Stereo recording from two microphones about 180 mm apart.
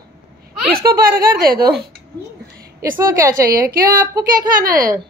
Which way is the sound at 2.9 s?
15° right (ahead or behind).